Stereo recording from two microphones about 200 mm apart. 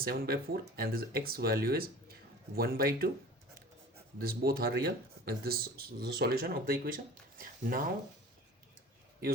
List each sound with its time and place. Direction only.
0.0 s speech: 50° right (ahead or behind)
4.2 s speech: 50° right (ahead or behind)